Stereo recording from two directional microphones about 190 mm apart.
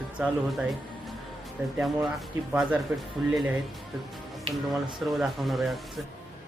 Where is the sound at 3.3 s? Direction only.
5° right (ahead or behind).